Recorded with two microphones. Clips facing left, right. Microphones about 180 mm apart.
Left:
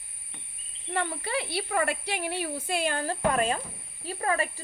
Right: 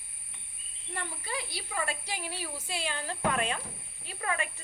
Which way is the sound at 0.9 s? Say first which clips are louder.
Left 8 dB; 70° left (ahead or behind).